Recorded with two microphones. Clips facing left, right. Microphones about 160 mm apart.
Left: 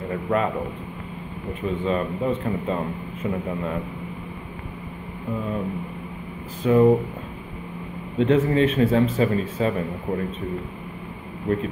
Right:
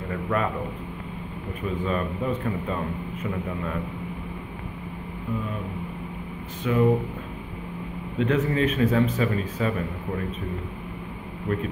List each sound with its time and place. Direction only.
0.1 s a man's voice: 30° left (ahead or behind)
1.9 s speech: 25° left (ahead or behind)
6.6 s speech: 30° left (ahead or behind)
8.2 s speech: 30° left (ahead or behind)
11.5 s speech: 35° left (ahead or behind)